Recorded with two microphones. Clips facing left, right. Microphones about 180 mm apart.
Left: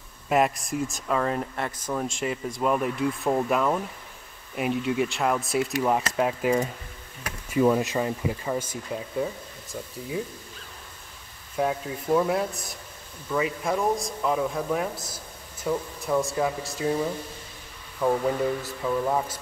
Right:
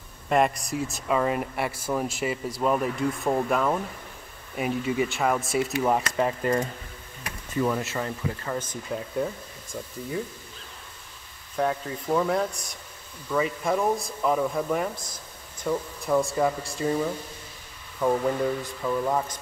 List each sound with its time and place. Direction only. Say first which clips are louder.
0.3 s speech: even; centre (ahead or behind)
7.4 s speech: left 5 dB; 15° left (ahead or behind)
11.5 s speech: even; 5° left (ahead or behind)